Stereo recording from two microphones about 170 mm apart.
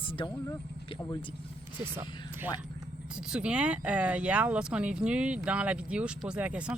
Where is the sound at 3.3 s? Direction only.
5° right (ahead or behind).